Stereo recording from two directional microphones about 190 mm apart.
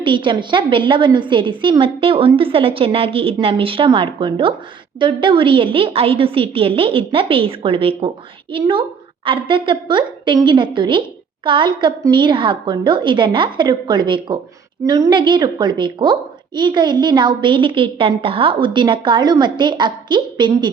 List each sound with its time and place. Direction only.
0.0 s a woman's voice: 25° right (ahead or behind)